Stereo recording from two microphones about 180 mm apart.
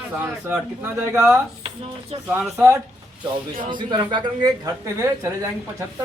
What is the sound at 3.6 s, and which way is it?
Speech, 25° right (ahead or behind).